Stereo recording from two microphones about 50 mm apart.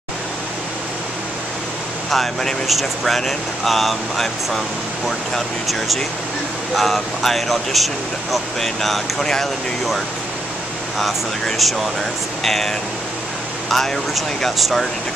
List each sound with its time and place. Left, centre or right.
2.0 s speech: centre